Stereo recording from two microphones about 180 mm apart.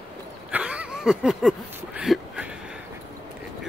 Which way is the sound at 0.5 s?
5° right (ahead or behind).